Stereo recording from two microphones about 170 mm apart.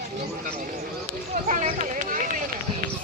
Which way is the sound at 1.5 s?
45° right (ahead or behind).